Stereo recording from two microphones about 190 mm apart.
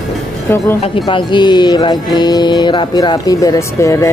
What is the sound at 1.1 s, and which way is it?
Music, 25° left (ahead or behind).